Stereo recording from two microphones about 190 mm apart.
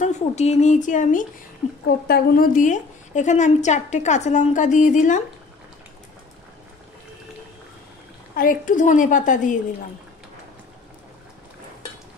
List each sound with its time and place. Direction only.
0.0 s a woman's voice: 35° left (ahead or behind)
1.9 s a woman's voice: 55° left (ahead or behind)
8.4 s a woman's voice: 45° left (ahead or behind)